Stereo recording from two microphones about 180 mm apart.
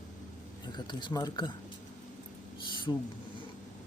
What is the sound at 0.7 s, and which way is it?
Speech, 25° left (ahead or behind).